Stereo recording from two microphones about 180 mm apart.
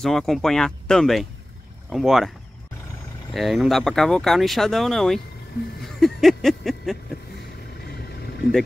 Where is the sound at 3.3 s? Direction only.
Centre (ahead or behind).